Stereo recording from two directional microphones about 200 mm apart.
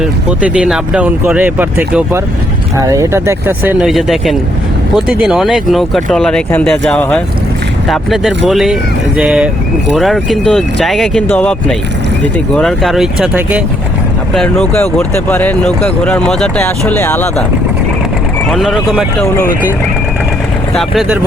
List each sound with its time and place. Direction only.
0.0 s speech: 5° right (ahead or behind); by 17.4 s 10° left (ahead or behind)
18.5 s speech: centre (ahead or behind)
20.7 s speech: centre (ahead or behind)